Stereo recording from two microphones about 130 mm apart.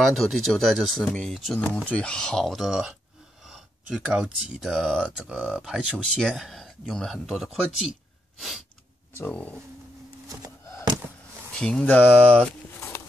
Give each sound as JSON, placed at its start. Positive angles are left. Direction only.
{"t": 0.0, "sound": "speech", "side_deg": 0}
{"t": 9.2, "sound": "speech", "side_deg": 10}
{"t": 10.2, "sound": "a sound", "side_deg": -25}
{"t": 11.5, "sound": "speech", "side_deg": 5}